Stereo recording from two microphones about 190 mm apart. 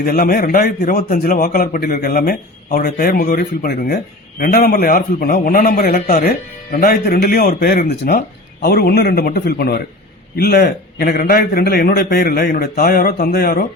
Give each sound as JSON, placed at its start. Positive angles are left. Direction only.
{"t": 0.0, "sound": "a man's voice", "side_deg": 50}